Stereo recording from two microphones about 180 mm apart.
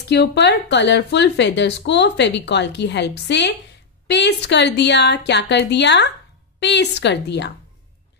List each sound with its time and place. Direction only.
0.1 s speech: 70° left (ahead or behind)